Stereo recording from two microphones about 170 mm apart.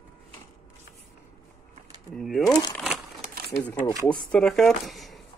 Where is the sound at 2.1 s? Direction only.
Centre (ahead or behind).